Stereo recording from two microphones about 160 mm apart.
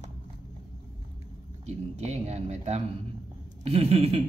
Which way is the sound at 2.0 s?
40° right (ahead or behind).